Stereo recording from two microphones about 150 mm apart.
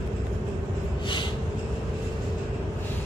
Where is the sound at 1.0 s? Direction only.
30° left (ahead or behind).